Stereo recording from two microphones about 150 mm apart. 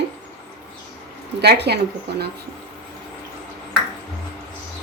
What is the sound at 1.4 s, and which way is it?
Speech, 90° right.